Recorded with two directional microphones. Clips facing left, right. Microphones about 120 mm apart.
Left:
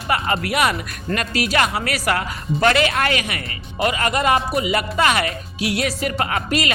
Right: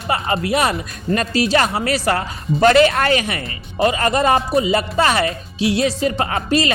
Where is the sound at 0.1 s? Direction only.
25° right (ahead or behind).